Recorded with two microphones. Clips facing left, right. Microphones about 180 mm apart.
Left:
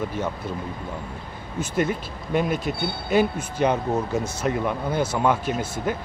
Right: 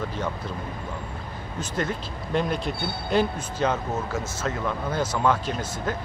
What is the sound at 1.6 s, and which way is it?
Speech, 10° left (ahead or behind).